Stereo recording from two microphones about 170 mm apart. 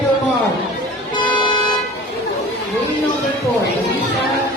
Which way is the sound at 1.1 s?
30° left (ahead or behind).